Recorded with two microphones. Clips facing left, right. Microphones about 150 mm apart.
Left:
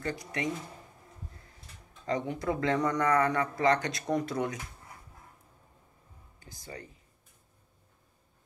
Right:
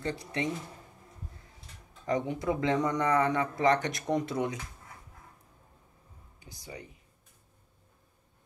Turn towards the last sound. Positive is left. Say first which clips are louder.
# even
turn(degrees=-15)  # may be behind; listen again after turning